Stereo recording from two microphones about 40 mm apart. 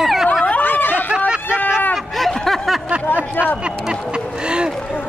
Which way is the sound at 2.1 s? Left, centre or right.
Centre.